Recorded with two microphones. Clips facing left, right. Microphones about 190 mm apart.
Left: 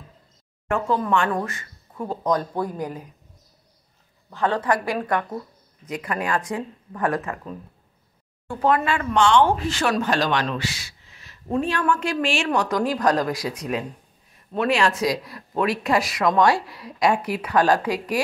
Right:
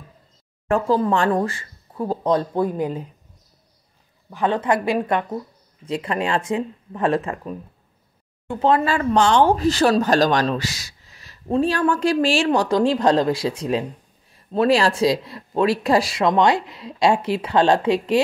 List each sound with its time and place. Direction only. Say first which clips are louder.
0.7 s speech: right 4 dB; 35° right (ahead or behind)
4.3 s speech: right 2 dB; 20° right (ahead or behind)